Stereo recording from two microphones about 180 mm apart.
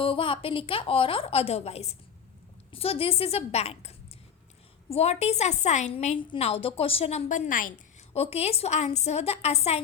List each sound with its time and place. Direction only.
0.0 s a woman's voice: 30° left (ahead or behind); by 7.7 s 45° left (ahead or behind)
8.1 s a woman's voice: 35° left (ahead or behind)